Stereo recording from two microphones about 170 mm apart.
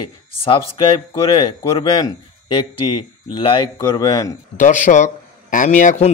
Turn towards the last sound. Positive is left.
turn(degrees=45)  # may be behind; listen again after turning